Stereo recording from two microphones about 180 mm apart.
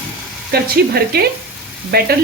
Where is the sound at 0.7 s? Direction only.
60° right (ahead or behind).